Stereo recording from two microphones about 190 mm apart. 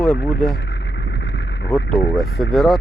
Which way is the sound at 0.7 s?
70° left (ahead or behind).